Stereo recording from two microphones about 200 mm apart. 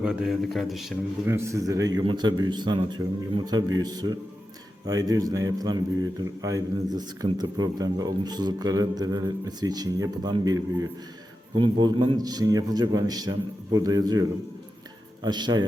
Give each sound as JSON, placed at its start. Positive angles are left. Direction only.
{"t": 0.0, "sound": "speech", "side_deg": 0}
{"t": 1.3, "sound": "a man's voice", "side_deg": -15}